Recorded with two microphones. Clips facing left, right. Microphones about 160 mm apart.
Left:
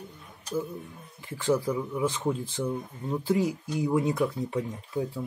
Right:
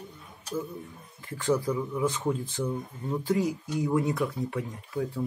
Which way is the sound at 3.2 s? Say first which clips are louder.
Left 1 dB; 25° left (ahead or behind).